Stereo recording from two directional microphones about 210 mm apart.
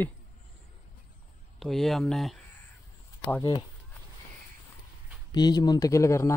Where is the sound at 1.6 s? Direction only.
Centre (ahead or behind).